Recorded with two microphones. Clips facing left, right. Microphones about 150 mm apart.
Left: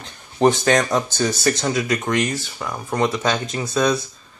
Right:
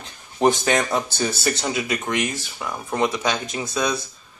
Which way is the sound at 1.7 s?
25° right (ahead or behind).